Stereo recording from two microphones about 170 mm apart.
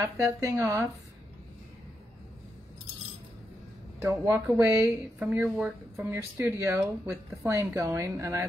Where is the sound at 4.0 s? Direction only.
15° right (ahead or behind).